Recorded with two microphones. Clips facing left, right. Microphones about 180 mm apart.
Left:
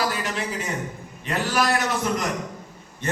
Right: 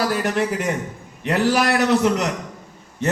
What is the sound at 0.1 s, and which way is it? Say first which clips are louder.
Speech: right 7 dB; 55° right (ahead or behind).